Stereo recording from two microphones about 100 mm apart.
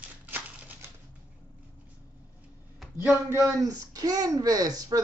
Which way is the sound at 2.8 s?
Centre (ahead or behind).